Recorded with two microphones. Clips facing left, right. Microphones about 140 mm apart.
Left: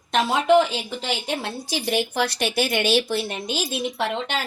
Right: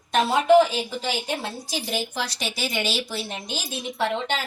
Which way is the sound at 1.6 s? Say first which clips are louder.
Left 5 dB; 65° left (ahead or behind).